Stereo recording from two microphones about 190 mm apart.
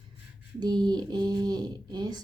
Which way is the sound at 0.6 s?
25° right (ahead or behind).